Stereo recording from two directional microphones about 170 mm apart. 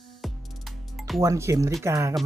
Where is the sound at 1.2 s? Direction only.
15° right (ahead or behind).